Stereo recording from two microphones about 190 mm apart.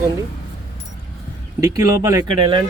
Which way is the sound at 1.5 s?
20° right (ahead or behind).